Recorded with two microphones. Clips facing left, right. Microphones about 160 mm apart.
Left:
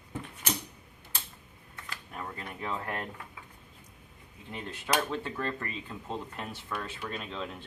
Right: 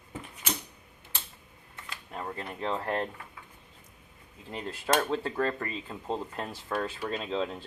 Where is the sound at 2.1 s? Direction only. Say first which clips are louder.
Right 4 dB; 30° right (ahead or behind).